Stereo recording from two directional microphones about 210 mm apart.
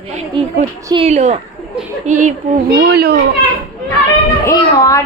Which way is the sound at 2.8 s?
45° right (ahead or behind).